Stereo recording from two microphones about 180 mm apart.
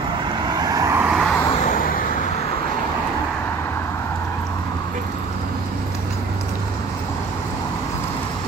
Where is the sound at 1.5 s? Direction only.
45° left (ahead or behind).